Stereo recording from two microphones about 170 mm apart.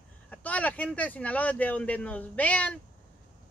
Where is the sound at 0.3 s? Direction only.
10° left (ahead or behind).